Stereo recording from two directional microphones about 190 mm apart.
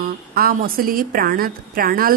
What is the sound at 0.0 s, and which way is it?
A woman's voice, 50° right (ahead or behind).